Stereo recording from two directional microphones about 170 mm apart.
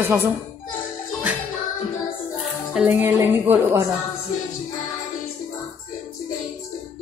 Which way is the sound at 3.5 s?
15° right (ahead or behind).